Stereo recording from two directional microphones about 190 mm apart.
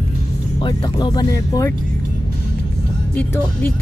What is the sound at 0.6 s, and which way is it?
Speech, 20° left (ahead or behind).